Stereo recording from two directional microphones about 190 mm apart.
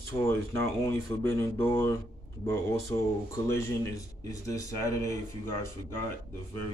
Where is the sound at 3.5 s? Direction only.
15° left (ahead or behind).